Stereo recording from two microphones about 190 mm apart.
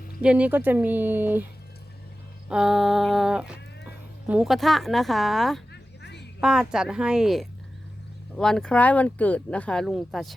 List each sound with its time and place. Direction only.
0.2 s speech: 5° right (ahead or behind)
2.5 s speech: centre (ahead or behind)
5.7 s a sound: 65° left (ahead or behind)
6.4 s speech: 5° right (ahead or behind)